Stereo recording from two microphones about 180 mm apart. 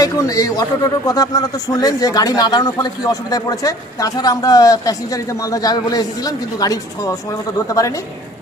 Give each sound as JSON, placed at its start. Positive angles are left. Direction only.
{"t": 0.0, "sound": "speech", "side_deg": 20}